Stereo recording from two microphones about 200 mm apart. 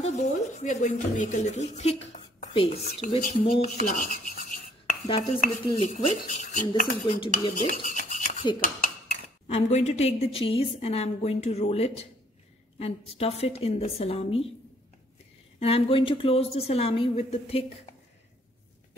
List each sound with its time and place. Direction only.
0.0 s speech: 35° left (ahead or behind)
3.2 s speech: 50° left (ahead or behind)
3.9 s filing: 40° left (ahead or behind)
5.4 s dishes: 35° left (ahead or behind)
6.7 s a woman's voice: 25° left (ahead or behind)
7.6 s toothbrush: 40° left (ahead or behind)
8.6 s a woman's voice: 40° left (ahead or behind)
15.6 s a woman's voice: 25° left (ahead or behind)